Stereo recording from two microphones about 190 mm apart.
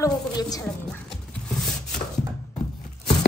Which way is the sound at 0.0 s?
20° left (ahead or behind).